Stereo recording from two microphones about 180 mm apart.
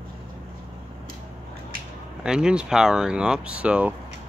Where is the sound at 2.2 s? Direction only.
5° right (ahead or behind).